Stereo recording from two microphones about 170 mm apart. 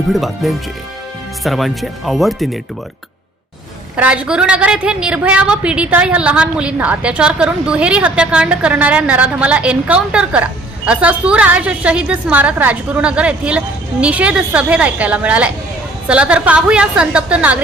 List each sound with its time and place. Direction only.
0.1 s speech: centre (ahead or behind)
3.9 s a woman's voice: 5° right (ahead or behind)